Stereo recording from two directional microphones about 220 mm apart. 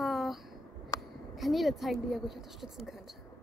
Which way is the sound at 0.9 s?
15° left (ahead or behind).